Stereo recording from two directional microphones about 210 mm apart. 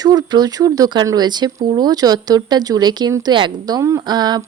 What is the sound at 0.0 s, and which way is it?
Speech, 20° right (ahead or behind).